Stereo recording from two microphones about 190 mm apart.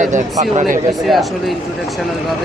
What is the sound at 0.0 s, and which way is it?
Speech, 40° right (ahead or behind).